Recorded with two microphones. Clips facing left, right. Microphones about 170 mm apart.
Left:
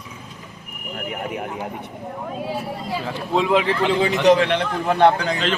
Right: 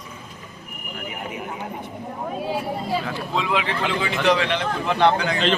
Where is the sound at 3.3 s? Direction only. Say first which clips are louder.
Left 6 dB; 45° left (ahead or behind).